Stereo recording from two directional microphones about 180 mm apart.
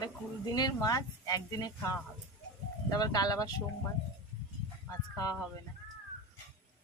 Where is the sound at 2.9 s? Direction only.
20° left (ahead or behind).